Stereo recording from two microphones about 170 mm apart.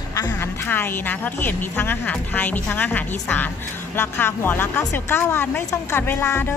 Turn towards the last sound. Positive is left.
turn(degrees=15)  # may be behind; listen again after turning